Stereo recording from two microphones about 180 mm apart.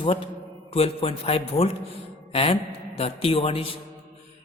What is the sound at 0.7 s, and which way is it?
Speech, 35° left (ahead or behind).